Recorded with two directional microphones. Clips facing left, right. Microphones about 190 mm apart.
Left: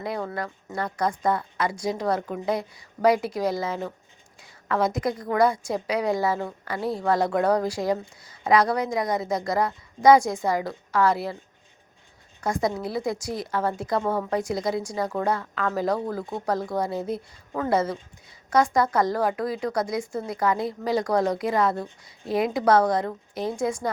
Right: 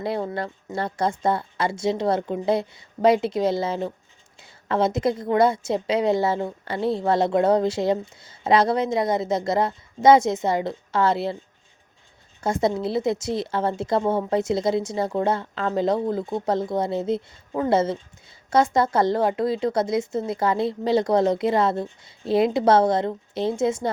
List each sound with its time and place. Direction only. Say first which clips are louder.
0.0 s a woman's voice: right 3 dB; 30° right (ahead or behind)
12.4 s a woman's voice: right 3 dB; 25° right (ahead or behind)